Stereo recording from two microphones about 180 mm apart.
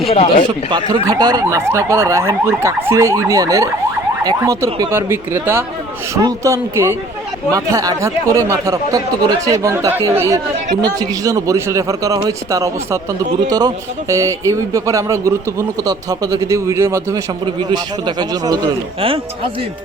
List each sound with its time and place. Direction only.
0.0 s speech: 35° left (ahead or behind)
0.7 s speech: 25° right (ahead or behind)